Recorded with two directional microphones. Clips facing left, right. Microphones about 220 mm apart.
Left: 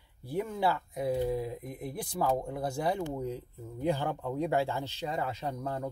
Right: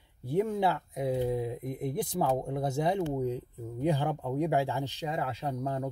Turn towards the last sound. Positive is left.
turn(degrees=-15)  # may be behind; listen again after turning